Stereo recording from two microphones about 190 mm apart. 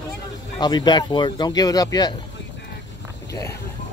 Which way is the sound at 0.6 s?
20° left (ahead or behind).